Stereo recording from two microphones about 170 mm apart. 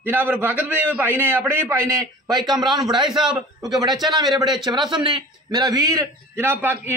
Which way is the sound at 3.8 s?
25° right (ahead or behind).